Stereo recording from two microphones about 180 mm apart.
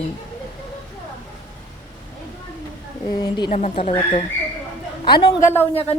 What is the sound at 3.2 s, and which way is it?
Speech, 25° left (ahead or behind).